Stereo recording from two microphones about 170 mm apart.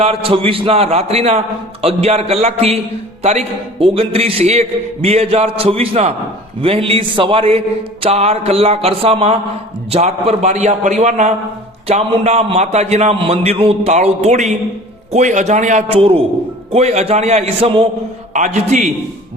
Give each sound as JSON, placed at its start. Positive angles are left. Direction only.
{"t": 0.0, "sound": "a man's voice", "side_deg": -35}